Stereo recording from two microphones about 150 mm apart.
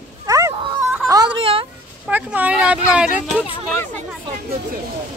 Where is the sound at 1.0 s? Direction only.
25° right (ahead or behind).